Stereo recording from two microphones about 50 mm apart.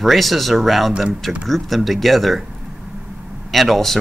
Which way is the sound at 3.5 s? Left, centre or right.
Centre.